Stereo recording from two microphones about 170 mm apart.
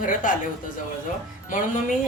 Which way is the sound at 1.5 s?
50° left (ahead or behind).